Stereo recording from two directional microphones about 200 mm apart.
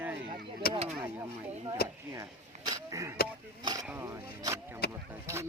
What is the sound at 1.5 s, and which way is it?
Speech, 30° right (ahead or behind).